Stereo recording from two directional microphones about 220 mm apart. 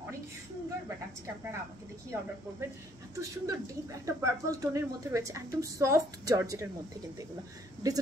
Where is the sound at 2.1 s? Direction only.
10° right (ahead or behind).